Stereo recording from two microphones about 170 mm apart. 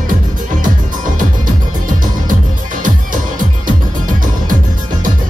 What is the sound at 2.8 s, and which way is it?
Music, 50° right (ahead or behind).